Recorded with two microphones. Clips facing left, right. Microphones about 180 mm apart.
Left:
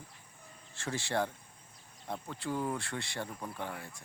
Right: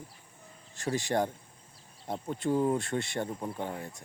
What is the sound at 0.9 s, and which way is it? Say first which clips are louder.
Speech: right 4 dB; 20° right (ahead or behind).